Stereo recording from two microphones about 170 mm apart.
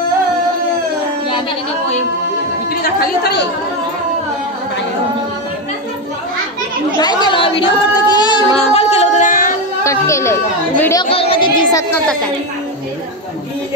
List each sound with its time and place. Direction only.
2.7 s chatter: 60° left (ahead or behind)
7.0 s child singing: 25° left (ahead or behind)
8.5 s music: 40° left (ahead or behind)
9.8 s chatter: 15° left (ahead or behind)
11.1 s speech: 35° left (ahead or behind)